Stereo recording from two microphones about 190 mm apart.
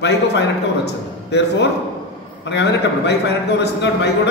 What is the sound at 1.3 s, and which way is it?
A man's voice, 60° left (ahead or behind).